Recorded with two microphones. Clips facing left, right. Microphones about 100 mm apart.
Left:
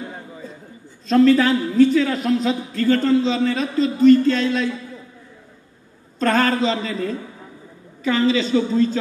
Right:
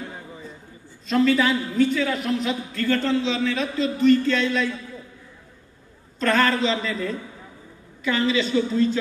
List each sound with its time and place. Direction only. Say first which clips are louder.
1.1 s a man's voice: left 5 dB; 45° left (ahead or behind)
6.1 s a man's voice: left 2 dB; 40° left (ahead or behind)